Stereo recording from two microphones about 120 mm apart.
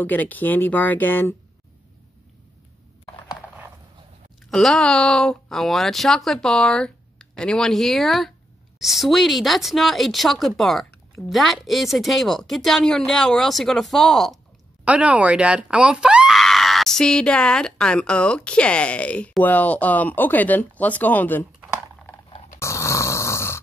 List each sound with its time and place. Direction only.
0.0 s speech: 15° left (ahead or behind)
4.5 s speech: 5° left (ahead or behind)
14.9 s speech: 10° right (ahead or behind); by 21.5 s 15° left (ahead or behind)
22.6 s snoring: 25° left (ahead or behind)